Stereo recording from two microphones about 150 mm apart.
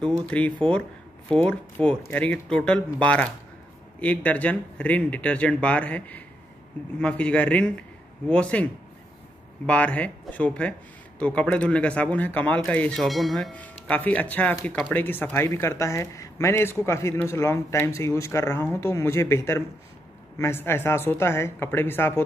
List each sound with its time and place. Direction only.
0.3 s speech: 10° left (ahead or behind)
9.7 s speech: 10° left (ahead or behind)